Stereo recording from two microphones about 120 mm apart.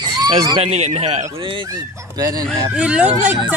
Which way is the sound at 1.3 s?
45° right (ahead or behind).